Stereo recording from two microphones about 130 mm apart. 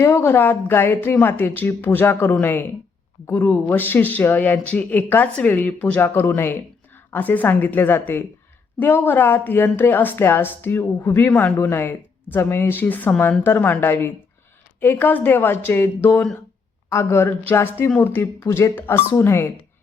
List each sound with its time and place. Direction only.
0.0 s speech: 20° left (ahead or behind)